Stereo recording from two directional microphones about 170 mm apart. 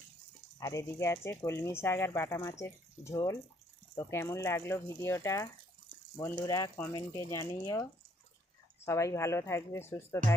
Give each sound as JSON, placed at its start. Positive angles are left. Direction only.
{"t": 0.6, "sound": "speech", "side_deg": 20}